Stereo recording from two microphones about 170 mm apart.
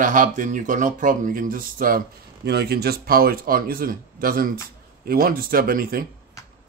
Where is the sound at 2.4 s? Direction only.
70° right (ahead or behind).